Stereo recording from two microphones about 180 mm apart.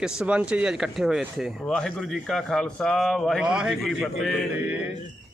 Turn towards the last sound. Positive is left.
turn(degrees=-5)  # may be behind; listen again after turning